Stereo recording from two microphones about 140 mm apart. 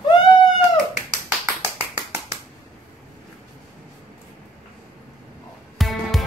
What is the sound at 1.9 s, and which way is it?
Finger snapping, 25° right (ahead or behind).